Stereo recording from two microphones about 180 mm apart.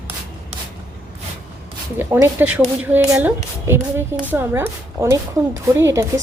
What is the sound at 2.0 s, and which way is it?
A woman's voice, 10° right (ahead or behind).